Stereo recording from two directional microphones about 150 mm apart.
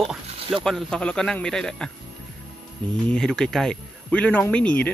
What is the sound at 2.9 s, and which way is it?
Speech, 5° left (ahead or behind).